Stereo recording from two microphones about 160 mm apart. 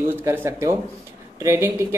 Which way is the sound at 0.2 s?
15° right (ahead or behind).